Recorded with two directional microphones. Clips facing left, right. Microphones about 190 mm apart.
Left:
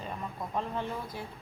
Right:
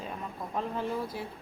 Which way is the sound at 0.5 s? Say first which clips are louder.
Right 3 dB; centre (ahead or behind).